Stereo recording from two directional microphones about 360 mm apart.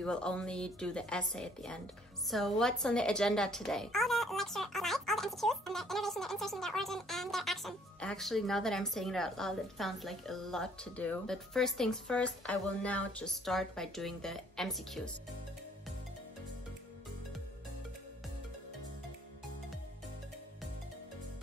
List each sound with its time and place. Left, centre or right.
0.0 s speech: centre